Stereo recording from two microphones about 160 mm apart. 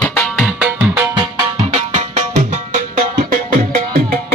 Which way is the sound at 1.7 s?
45° right (ahead or behind).